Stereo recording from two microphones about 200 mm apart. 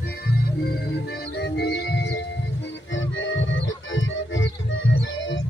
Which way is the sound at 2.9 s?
70° left (ahead or behind).